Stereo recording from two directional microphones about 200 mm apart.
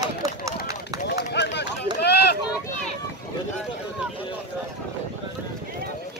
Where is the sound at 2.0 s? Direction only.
55° left (ahead or behind).